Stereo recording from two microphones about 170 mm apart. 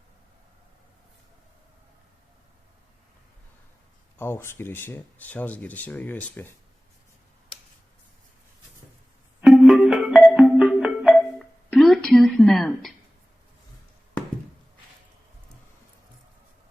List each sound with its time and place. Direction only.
4.2 s speech: 15° left (ahead or behind)
9.4 s music: centre (ahead or behind)